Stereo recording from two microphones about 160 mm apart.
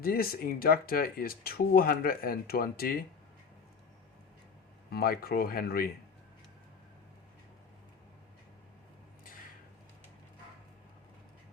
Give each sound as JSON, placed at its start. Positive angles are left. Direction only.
{"t": 0.0, "sound": "speech", "side_deg": 70}
{"t": 4.9, "sound": "speech", "side_deg": 70}